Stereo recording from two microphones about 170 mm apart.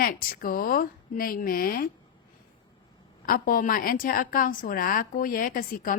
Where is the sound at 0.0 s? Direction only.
60° left (ahead or behind).